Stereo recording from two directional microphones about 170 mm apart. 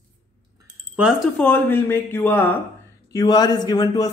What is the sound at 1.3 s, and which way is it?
Speech, 10° left (ahead or behind).